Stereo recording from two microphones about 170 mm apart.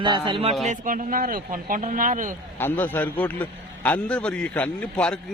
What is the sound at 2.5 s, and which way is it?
A man's voice, 10° left (ahead or behind).